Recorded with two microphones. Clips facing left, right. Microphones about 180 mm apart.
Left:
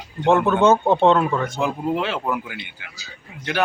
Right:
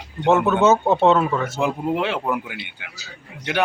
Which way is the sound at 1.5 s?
15° right (ahead or behind).